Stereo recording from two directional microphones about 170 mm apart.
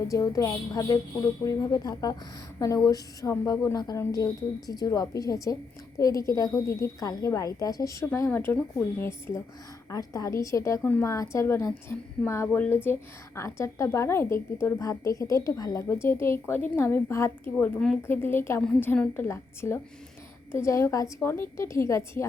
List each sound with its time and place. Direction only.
0.1 s a woman's voice: 20° left (ahead or behind)